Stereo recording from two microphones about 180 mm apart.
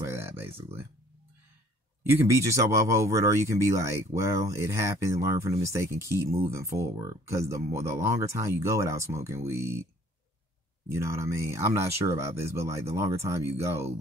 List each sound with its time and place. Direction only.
0.0 s a sound: 15° right (ahead or behind)
2.0 s speech: 15° right (ahead or behind)
10.9 s speech: 15° right (ahead or behind)